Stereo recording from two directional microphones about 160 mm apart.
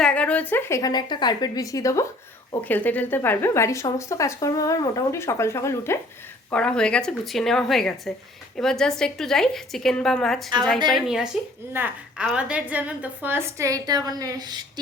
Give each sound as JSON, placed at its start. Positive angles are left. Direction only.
{"t": 0.0, "sound": "a woman's voice", "side_deg": 5}
{"t": 6.5, "sound": "a woman's voice", "side_deg": 5}